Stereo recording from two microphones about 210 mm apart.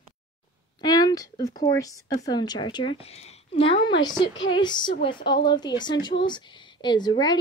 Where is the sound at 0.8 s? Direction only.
20° left (ahead or behind).